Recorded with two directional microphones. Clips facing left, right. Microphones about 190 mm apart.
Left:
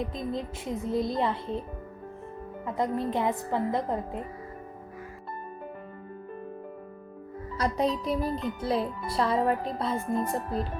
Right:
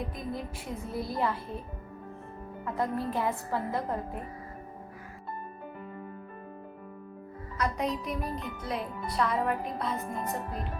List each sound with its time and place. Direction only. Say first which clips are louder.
0.0 s speech: left 4 dB; 20° left (ahead or behind)
2.6 s speech: left 2 dB; 20° left (ahead or behind)
7.5 s speech: left 4 dB; 30° left (ahead or behind)